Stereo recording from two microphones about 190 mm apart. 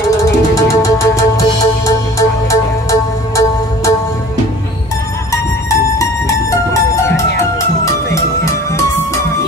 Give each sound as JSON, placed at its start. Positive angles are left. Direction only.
{"t": 0.2, "sound": "music", "side_deg": 15}
{"t": 5.3, "sound": "music", "side_deg": 15}